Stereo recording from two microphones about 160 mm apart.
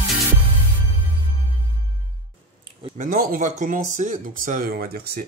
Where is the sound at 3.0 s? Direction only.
55° right (ahead or behind).